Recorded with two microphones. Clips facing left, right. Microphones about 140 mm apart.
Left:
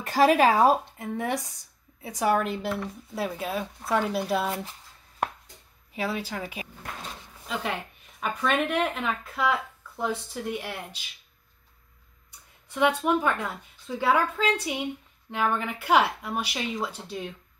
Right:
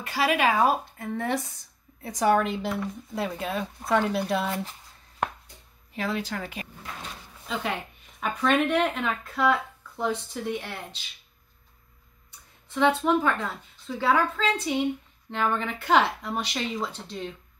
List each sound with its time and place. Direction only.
0.0 s speech: 45° left (ahead or behind)
0.9 s a woman's voice: 15° left (ahead or behind)
5.9 s a woman's voice: 10° left (ahead or behind)
8.2 s speech: centre (ahead or behind)
12.6 s a woman's voice: 10° left (ahead or behind)